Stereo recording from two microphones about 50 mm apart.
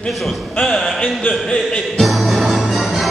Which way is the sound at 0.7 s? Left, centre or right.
Centre.